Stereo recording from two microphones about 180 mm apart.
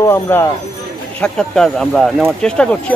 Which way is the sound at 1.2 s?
5° left (ahead or behind).